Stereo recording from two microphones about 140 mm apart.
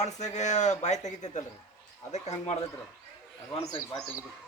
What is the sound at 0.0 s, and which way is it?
Speech, 55° left (ahead or behind).